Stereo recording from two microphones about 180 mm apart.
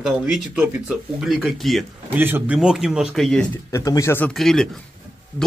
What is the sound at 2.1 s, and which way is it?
Speech, 10° right (ahead or behind).